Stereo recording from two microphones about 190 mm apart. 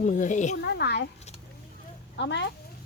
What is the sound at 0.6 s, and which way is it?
Speech, 60° left (ahead or behind).